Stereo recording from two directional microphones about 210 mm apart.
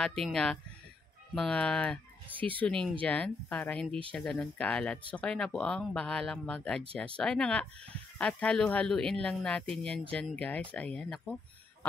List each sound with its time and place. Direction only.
0.0 s speech: 5° left (ahead or behind)
2.3 s speech: 25° right (ahead or behind)
2.6 s speech: 5° left (ahead or behind)